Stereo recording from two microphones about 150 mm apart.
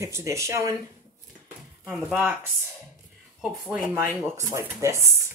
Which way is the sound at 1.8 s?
5° right (ahead or behind).